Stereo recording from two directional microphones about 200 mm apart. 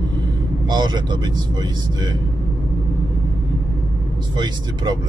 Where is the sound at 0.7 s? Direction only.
20° right (ahead or behind).